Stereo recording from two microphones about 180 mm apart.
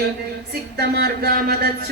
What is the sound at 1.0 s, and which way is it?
Speech, 60° right (ahead or behind).